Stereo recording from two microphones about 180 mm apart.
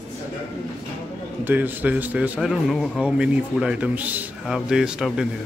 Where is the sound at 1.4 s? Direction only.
10° right (ahead or behind).